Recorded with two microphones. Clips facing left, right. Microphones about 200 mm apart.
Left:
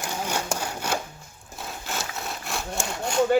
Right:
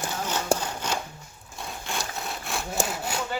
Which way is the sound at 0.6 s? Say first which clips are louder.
Left 1 dB; 10° left (ahead or behind).